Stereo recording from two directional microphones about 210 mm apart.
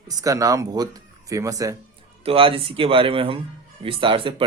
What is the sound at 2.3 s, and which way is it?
Speech, 25° right (ahead or behind).